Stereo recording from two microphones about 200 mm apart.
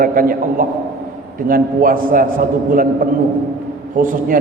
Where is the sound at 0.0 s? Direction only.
45° right (ahead or behind).